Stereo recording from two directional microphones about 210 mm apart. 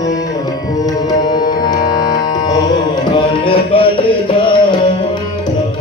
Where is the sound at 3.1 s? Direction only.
25° left (ahead or behind).